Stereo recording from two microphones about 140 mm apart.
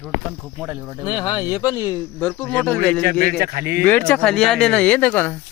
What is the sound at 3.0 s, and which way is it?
Speech, 90° right.